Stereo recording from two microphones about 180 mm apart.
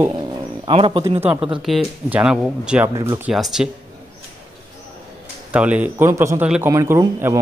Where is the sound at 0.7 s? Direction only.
30° right (ahead or behind).